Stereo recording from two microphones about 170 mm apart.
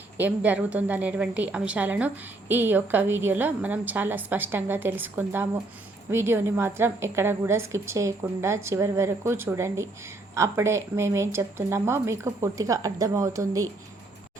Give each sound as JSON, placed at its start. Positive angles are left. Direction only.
{"t": 0.2, "sound": "a woman's voice", "side_deg": -10}